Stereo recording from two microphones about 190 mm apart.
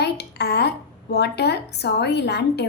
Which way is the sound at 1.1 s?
60° left (ahead or behind).